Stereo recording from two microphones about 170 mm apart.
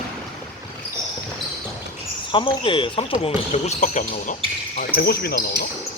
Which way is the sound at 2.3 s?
30° left (ahead or behind).